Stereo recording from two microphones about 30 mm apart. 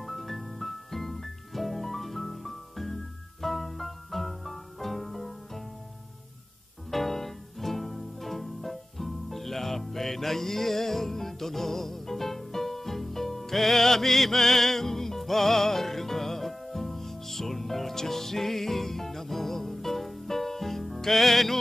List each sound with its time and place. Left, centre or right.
0.0 s music: centre
6.9 s music: centre